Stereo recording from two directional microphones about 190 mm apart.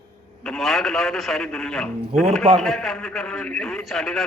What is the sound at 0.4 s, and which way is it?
A man's voice, centre (ahead or behind).